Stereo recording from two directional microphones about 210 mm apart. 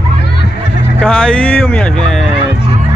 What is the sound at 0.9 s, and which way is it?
Speech, 5° left (ahead or behind).